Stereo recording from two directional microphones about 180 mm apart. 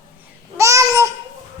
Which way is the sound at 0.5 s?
15° right (ahead or behind).